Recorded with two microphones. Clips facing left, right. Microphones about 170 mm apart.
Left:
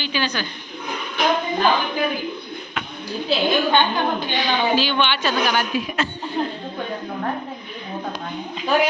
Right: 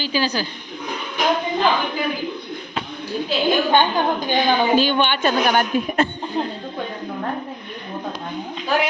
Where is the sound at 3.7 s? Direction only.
45° right (ahead or behind).